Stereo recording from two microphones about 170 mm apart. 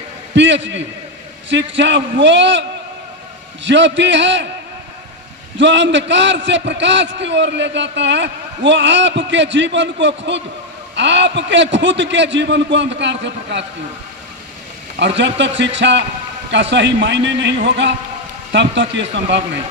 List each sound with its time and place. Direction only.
0.3 s a man's voice: 90° right
5.5 s a man's voice: 90° right
14.9 s a man's voice: 90° right